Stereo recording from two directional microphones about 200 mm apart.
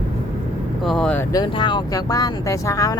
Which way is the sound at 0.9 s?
5° left (ahead or behind).